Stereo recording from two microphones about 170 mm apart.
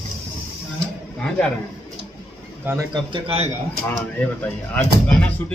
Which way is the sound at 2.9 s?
30° right (ahead or behind).